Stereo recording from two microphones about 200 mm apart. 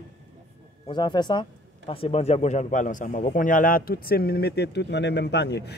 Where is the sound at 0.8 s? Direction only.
20° left (ahead or behind).